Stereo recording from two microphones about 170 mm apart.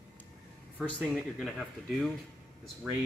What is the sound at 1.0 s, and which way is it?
Speech, centre (ahead or behind).